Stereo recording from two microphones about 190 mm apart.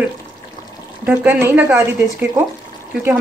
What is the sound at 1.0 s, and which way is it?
Speech, 10° right (ahead or behind).